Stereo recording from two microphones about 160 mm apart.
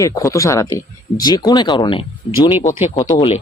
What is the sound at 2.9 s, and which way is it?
Speech, 20° left (ahead or behind).